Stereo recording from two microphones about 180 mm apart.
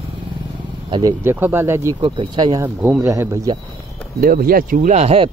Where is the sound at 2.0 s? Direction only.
25° right (ahead or behind).